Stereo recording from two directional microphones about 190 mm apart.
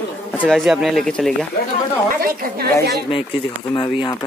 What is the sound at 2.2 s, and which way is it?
Speech, 50° right (ahead or behind).